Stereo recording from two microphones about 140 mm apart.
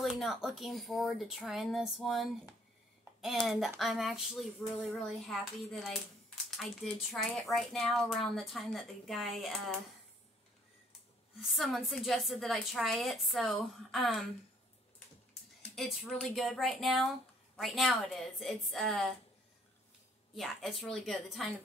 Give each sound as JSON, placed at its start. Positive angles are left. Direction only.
{"t": 0.0, "sound": "speech", "side_deg": 0}
{"t": 11.3, "sound": "speech", "side_deg": 0}
{"t": 15.7, "sound": "speech", "side_deg": 0}
{"t": 20.3, "sound": "speech", "side_deg": 0}